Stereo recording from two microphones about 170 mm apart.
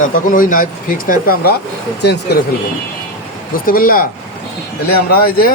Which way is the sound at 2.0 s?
80° left.